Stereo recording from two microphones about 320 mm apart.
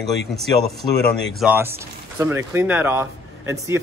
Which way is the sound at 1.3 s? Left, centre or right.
Centre.